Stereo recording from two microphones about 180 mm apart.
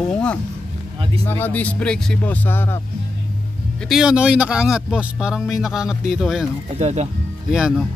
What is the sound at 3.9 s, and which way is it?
Speech, 5° right (ahead or behind).